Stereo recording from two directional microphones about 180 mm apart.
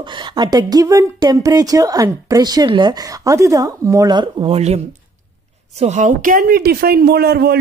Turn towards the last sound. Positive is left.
turn(degrees=-60)  # may be behind; listen again after turning